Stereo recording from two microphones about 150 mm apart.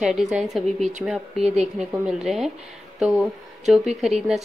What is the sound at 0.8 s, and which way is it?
Speech, 50° right (ahead or behind).